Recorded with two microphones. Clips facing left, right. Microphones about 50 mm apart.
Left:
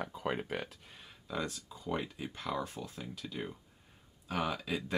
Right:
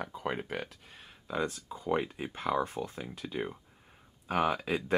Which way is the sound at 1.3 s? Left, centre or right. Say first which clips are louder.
Right 5 dB; centre.